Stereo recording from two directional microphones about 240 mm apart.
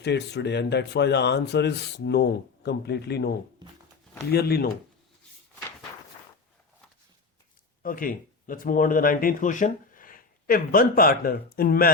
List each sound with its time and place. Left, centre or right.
0.0 s speech: left
7.8 s speech: left